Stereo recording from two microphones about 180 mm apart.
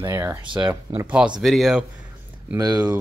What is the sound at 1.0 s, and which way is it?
Speech, 5° right (ahead or behind).